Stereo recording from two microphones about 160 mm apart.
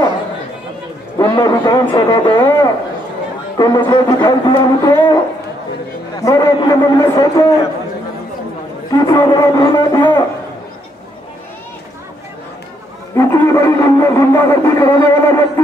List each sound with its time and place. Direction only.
1.1 s speech: 25° left (ahead or behind)
6.1 s speech: 20° left (ahead or behind)
8.9 s speech: 25° left (ahead or behind)
13.1 s speech: 20° left (ahead or behind)